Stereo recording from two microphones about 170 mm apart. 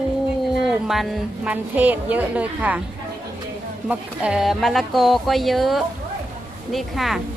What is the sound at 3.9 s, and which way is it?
Speech, 5° right (ahead or behind).